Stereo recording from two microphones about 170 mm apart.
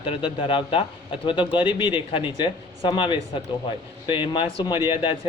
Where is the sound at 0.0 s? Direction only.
30° left (ahead or behind).